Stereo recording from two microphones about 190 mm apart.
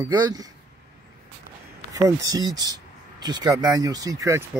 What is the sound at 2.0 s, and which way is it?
Speech, 20° right (ahead or behind).